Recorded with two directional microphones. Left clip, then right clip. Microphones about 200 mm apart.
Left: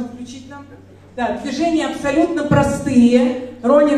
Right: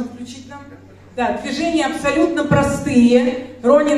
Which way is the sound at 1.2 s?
20° right (ahead or behind).